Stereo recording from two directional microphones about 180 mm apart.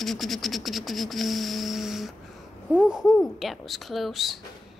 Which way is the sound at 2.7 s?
5° right (ahead or behind).